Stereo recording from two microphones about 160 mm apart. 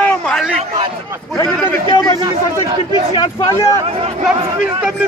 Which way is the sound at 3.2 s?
20° left (ahead or behind).